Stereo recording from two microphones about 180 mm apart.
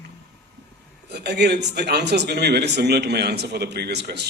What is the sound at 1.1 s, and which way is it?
A woman's voice, 65° right (ahead or behind).